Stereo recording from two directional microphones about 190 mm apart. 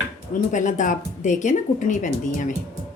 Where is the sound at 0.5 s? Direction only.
40° left (ahead or behind).